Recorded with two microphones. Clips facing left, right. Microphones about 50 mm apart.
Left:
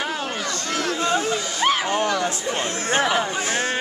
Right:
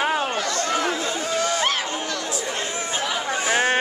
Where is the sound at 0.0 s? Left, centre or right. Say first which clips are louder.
Right 4 dB; right.